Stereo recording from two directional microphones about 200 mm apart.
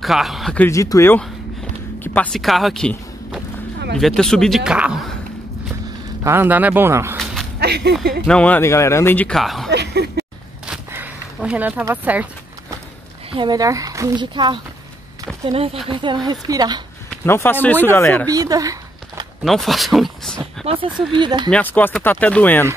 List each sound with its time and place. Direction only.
0.0 s speech: centre (ahead or behind)
0.7 s a man's voice: 15° left (ahead or behind); by 5.1 s 5° right (ahead or behind)
6.2 s speech: 10° right (ahead or behind)
7.2 s a sound: centre (ahead or behind)
7.6 s speech: 55° right (ahead or behind)
8.3 s a man's voice: 5° left (ahead or behind)
9.7 s a sound: 55° right (ahead or behind)
10.7 s a sound: 5° right (ahead or behind)
13.3 s speech: 20° right (ahead or behind)
17.2 s a man's voice: 10° left (ahead or behind)
18.3 s a sound: 20° right (ahead or behind)
19.4 s speech: centre (ahead or behind)
20.6 s speech: 25° right (ahead or behind)
21.5 s a man's voice: 10° left (ahead or behind)